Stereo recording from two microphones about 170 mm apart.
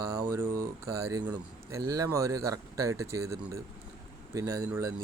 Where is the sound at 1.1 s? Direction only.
20° right (ahead or behind).